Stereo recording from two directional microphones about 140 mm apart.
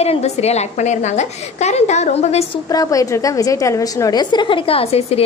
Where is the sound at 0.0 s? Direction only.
50° left (ahead or behind).